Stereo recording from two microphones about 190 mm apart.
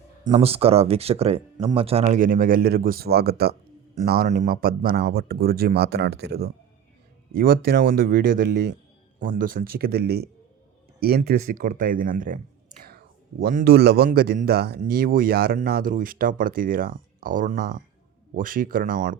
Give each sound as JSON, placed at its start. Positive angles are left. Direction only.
{"t": 0.3, "sound": "speech", "side_deg": -30}
{"t": 11.3, "sound": "speech", "side_deg": -40}